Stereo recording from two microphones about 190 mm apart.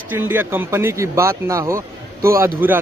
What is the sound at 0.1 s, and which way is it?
Speech, 10° right (ahead or behind).